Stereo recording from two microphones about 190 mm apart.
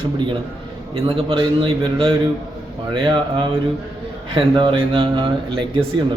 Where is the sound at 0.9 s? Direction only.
30° right (ahead or behind).